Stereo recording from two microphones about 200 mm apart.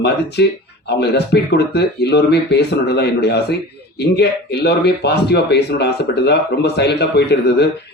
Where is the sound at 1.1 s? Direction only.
55° left (ahead or behind).